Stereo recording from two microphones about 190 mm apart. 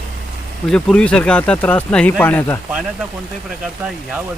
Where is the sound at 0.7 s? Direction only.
5° left (ahead or behind).